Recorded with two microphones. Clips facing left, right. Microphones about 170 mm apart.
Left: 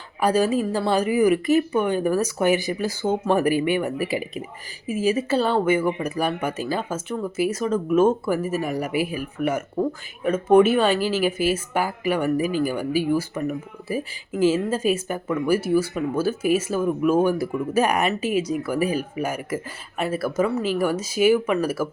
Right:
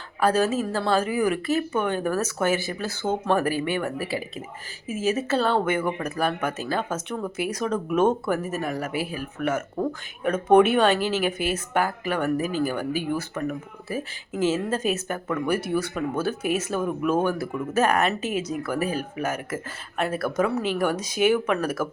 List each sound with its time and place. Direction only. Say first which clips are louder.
0.2 s speech: left 2 dB; 15° left (ahead or behind)